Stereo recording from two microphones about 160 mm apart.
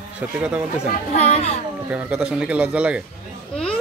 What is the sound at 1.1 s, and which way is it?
Speech, 45° left (ahead or behind).